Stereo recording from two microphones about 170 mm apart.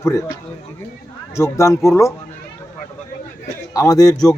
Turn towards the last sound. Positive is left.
turn(degrees=20)  # may be behind; listen again after turning